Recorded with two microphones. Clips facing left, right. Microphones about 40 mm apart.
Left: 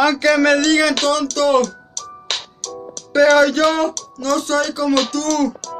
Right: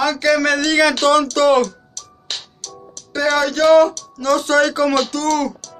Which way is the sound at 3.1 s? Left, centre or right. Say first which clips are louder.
Left 6 dB; left.